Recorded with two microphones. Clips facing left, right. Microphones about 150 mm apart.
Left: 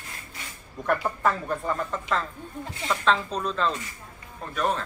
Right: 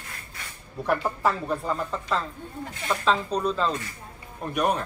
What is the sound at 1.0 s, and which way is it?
Speech, centre (ahead or behind).